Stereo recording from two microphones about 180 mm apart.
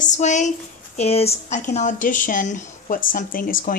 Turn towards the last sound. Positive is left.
turn(degrees=50)  # may be behind; listen again after turning